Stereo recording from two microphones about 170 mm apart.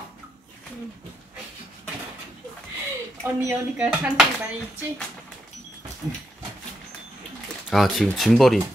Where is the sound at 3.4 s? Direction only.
5° right (ahead or behind).